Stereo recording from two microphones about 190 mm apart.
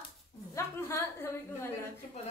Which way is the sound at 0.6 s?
15° left (ahead or behind).